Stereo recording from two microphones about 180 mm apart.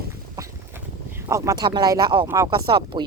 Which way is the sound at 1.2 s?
15° right (ahead or behind).